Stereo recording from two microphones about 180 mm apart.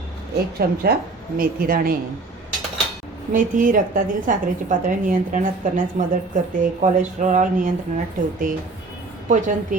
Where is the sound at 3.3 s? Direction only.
50° right (ahead or behind).